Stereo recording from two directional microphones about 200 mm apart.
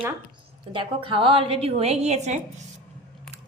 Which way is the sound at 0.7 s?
25° right (ahead or behind).